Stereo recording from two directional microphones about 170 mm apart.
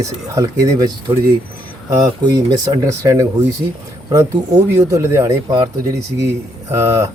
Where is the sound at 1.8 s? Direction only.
20° right (ahead or behind).